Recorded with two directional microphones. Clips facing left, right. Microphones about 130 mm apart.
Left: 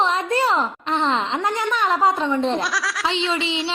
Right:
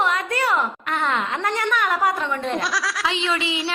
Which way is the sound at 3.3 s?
25° left (ahead or behind).